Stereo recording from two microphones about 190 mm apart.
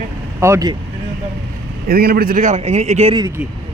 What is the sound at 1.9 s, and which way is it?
A man's voice, 55° right (ahead or behind).